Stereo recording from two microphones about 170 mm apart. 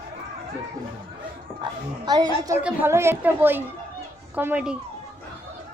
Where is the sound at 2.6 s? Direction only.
15° right (ahead or behind).